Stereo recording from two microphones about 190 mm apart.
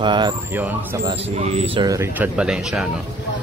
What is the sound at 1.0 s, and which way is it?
Speech, 35° right (ahead or behind).